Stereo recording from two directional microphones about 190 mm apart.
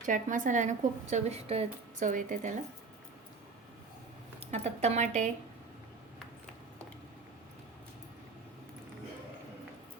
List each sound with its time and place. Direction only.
0.0 s speech: 45° right (ahead or behind)
4.4 s speech: 35° right (ahead or behind)